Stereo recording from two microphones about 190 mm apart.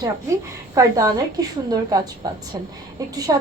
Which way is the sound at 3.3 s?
20° right (ahead or behind).